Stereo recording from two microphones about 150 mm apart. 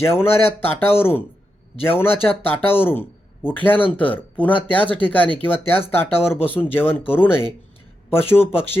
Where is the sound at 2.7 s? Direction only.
15° left (ahead or behind).